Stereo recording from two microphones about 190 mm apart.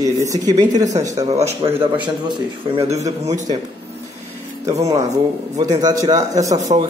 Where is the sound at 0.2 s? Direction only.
20° right (ahead or behind).